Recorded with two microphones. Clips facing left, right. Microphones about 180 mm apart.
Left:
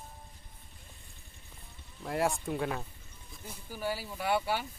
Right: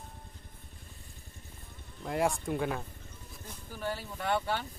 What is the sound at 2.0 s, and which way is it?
Speech, centre (ahead or behind).